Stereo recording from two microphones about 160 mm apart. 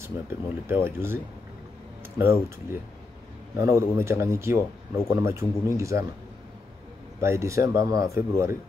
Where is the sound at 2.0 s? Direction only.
15° right (ahead or behind).